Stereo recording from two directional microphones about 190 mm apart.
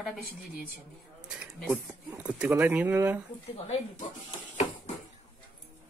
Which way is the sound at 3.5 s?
35° left (ahead or behind).